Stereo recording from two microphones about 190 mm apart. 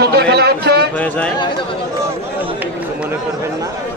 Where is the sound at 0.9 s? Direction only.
5° left (ahead or behind).